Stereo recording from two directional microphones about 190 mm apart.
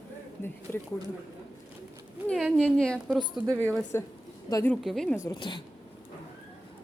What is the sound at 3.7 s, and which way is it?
A woman's voice, 10° left (ahead or behind).